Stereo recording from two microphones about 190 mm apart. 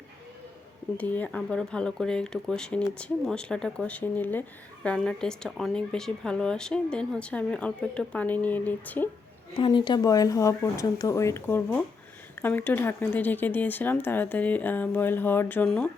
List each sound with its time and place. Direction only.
0.9 s speech: 10° left (ahead or behind)
9.6 s speech: 25° left (ahead or behind); by 15.9 s 5° left (ahead or behind)